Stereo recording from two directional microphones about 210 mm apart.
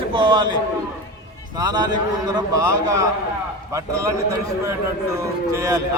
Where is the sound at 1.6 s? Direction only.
20° right (ahead or behind).